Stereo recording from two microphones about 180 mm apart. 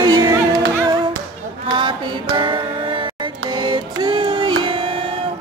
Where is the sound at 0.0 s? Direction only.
20° right (ahead or behind).